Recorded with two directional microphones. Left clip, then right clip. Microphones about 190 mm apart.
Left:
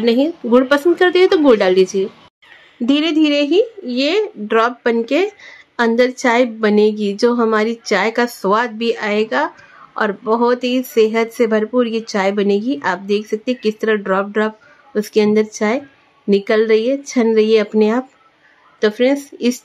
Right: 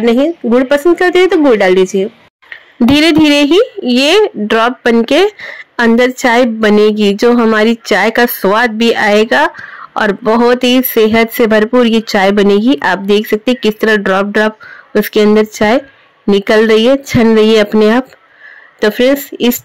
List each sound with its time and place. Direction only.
0.0 s speech: 20° right (ahead or behind)
2.8 s speech: 35° right (ahead or behind)